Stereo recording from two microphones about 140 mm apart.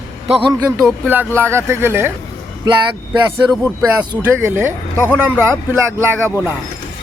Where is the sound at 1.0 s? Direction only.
15° right (ahead or behind).